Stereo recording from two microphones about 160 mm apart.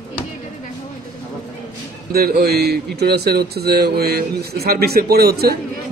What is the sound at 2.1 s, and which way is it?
A man's voice, 75° right (ahead or behind).